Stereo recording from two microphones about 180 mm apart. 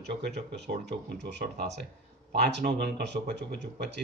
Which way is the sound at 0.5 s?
70° right (ahead or behind).